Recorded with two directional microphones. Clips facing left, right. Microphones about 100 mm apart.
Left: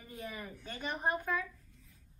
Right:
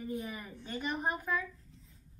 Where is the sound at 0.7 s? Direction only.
5° right (ahead or behind).